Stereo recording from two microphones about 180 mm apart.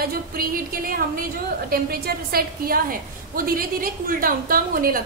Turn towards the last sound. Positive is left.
turn(degrees=-50)  # may be behind; listen again after turning